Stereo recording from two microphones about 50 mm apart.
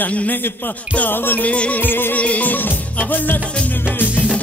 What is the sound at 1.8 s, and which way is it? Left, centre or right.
Music, left.